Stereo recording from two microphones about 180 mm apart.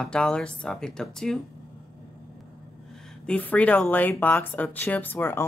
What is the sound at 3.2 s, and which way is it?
Speech, 5° left (ahead or behind).